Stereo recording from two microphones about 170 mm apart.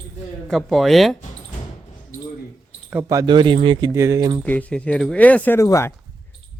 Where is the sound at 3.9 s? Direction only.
15° right (ahead or behind).